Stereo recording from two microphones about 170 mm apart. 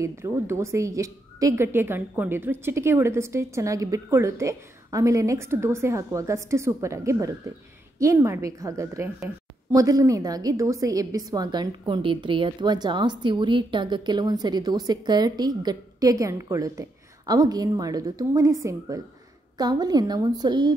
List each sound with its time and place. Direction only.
0.0 s a woman's voice: 15° right (ahead or behind)